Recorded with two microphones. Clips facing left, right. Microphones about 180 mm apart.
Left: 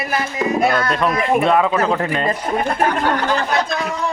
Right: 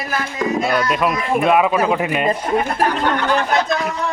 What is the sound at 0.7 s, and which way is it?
Speech, 15° right (ahead or behind).